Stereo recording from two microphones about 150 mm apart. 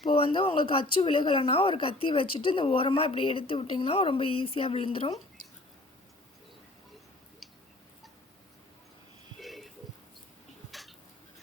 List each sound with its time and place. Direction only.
0.0 s speech: 35° left (ahead or behind)
9.4 s a sound: centre (ahead or behind)
10.7 s tick-tock: centre (ahead or behind)